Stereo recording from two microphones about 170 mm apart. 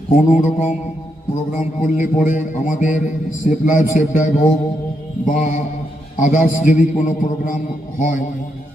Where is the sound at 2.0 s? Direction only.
50° left (ahead or behind).